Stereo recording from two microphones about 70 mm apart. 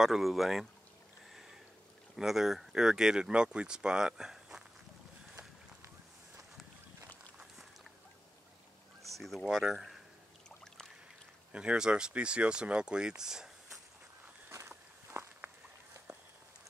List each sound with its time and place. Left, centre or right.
0.0 s speech: centre
2.1 s speech: centre
9.1 s speech: centre
11.5 s speech: centre
14.7 s walk: right